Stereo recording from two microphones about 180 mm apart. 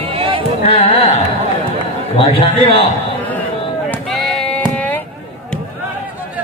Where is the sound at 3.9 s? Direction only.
5° left (ahead or behind).